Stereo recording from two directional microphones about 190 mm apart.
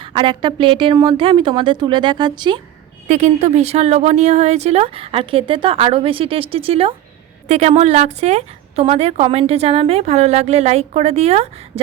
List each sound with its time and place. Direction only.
0.0 s a woman's voice: 25° right (ahead or behind)
3.1 s a woman's voice: 35° right (ahead or behind)